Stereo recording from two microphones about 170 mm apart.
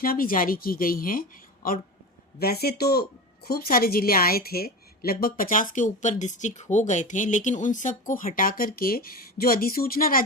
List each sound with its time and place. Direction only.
0.0 s speech: 60° left (ahead or behind)